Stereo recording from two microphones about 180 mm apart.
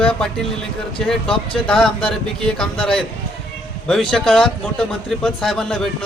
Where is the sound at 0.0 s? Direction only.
5° left (ahead or behind).